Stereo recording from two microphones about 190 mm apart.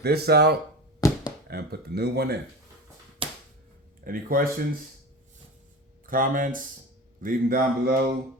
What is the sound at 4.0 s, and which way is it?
Speech, 50° right (ahead or behind).